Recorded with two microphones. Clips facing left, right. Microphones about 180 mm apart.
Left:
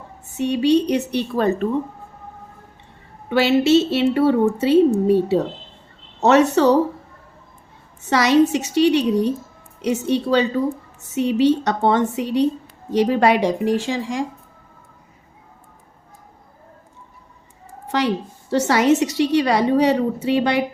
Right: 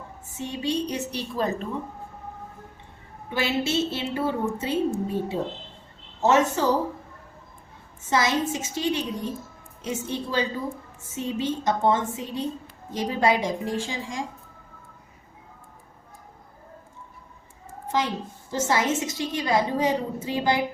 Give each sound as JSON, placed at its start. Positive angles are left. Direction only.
{"t": 0.3, "sound": "a woman's voice", "side_deg": 70}
{"t": 3.2, "sound": "a woman's voice", "side_deg": 70}
{"t": 8.0, "sound": "a woman's voice", "side_deg": 70}
{"t": 17.9, "sound": "a woman's voice", "side_deg": 70}